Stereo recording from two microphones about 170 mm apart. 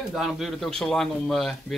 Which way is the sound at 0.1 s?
Centre (ahead or behind).